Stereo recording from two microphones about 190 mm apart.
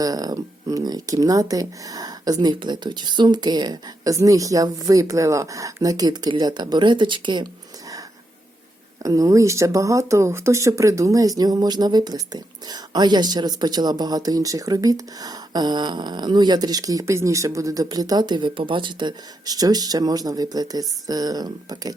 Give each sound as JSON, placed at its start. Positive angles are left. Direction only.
{"t": 0.0, "sound": "speech", "side_deg": -20}
{"t": 9.0, "sound": "speech", "side_deg": -15}